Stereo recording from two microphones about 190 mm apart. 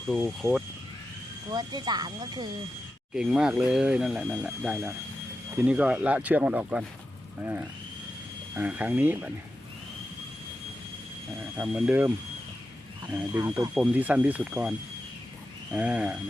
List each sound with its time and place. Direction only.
1.5 s speech: 20° right (ahead or behind)
3.2 s speech: 5° right (ahead or behind)
11.5 s speech: 5° right (ahead or behind)
13.1 s speech: 15° right (ahead or behind)
15.7 s speech: 5° right (ahead or behind)